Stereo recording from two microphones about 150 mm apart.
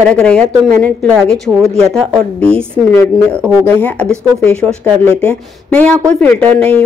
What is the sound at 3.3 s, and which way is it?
Speech, 15° right (ahead or behind).